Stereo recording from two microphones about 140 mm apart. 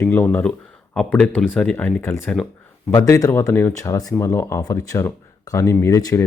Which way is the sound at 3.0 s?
20° left (ahead or behind).